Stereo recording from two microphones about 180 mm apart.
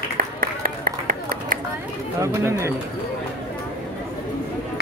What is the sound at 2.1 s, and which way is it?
Speech, 15° right (ahead or behind).